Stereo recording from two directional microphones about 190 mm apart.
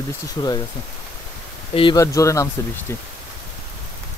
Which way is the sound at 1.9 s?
15° left (ahead or behind).